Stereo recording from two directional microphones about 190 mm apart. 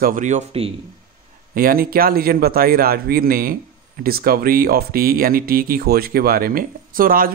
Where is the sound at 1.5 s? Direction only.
50° right (ahead or behind).